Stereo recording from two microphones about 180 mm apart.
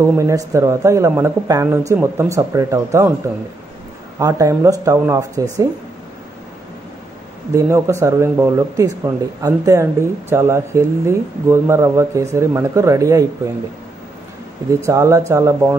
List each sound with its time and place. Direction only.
0.0 s speech: 15° right (ahead or behind)
4.2 s speech: 20° right (ahead or behind)
7.5 s speech: 15° right (ahead or behind)
14.9 s speech: 15° right (ahead or behind)